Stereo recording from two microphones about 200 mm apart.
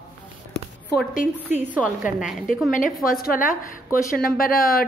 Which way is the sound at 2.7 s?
45° left (ahead or behind).